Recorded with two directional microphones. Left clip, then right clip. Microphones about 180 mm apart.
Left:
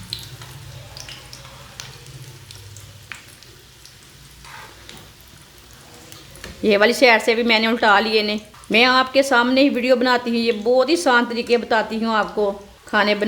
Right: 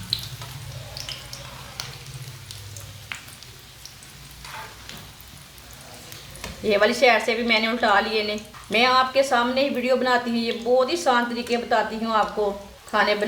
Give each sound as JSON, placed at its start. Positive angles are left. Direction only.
{"t": 6.7, "sound": "a woman's voice", "side_deg": 60}